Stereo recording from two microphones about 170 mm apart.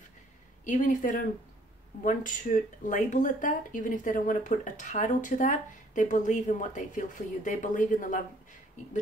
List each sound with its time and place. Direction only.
0.7 s speech: 50° left (ahead or behind)